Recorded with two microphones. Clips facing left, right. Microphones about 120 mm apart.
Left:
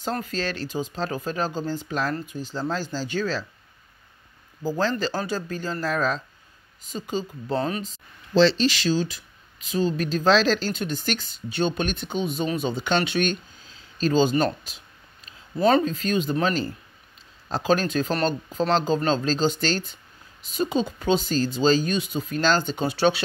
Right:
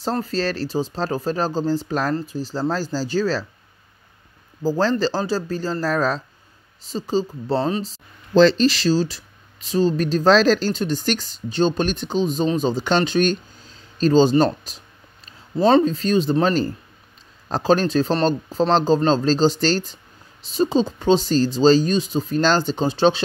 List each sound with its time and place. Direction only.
0.0 s speech: 35° right (ahead or behind)
4.6 s speech: 35° right (ahead or behind)